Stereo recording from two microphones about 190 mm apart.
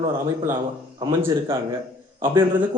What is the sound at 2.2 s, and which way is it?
Speech, 10° right (ahead or behind).